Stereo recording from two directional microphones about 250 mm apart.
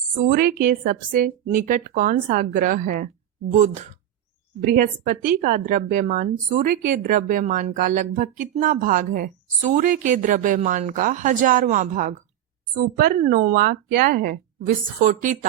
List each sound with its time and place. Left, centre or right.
0.3 s speech: right